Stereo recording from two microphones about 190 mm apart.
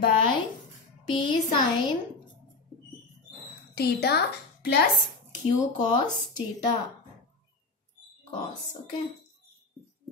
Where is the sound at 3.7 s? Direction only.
60° left (ahead or behind).